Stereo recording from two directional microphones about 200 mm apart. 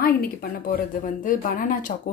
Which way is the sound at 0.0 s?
50° left (ahead or behind).